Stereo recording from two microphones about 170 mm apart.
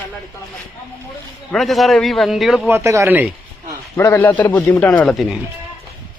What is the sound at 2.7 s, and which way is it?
Speech, 15° right (ahead or behind).